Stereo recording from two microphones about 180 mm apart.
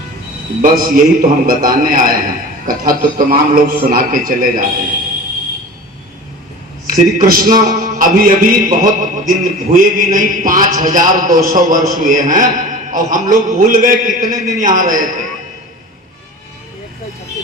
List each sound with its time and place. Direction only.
0.6 s a man's voice: 50° right (ahead or behind)
6.8 s a man's voice: 50° right (ahead or behind)